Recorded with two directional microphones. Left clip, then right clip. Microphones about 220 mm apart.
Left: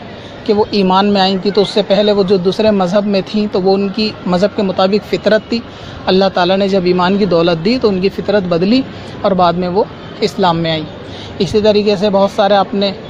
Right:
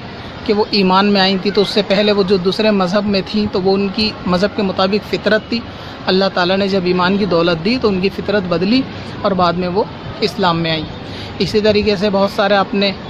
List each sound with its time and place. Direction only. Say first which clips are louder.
0.5 s speech: left 2 dB; 10° left (ahead or behind)